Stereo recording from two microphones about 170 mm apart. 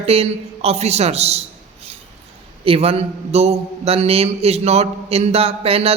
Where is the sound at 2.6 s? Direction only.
35° right (ahead or behind).